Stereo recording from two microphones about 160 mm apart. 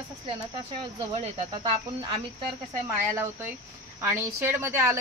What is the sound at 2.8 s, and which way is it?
A woman's voice, 15° right (ahead or behind).